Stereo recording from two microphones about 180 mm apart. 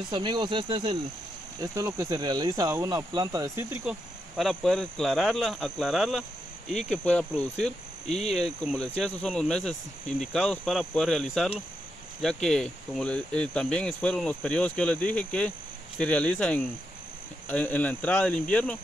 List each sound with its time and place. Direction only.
0.1 s speech: 25° right (ahead or behind)
1.6 s speech: 15° right (ahead or behind)
4.4 s speech: centre (ahead or behind)
8.1 s cricket: 35° left (ahead or behind)
8.6 s speech: 5° left (ahead or behind)
16.0 s cricket: 5° left (ahead or behind)